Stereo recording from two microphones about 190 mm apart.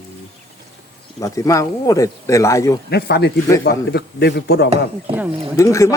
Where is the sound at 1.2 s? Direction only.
15° left (ahead or behind).